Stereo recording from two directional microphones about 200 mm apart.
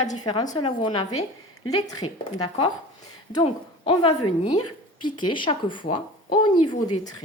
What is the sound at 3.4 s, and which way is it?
A woman's voice, 25° left (ahead or behind).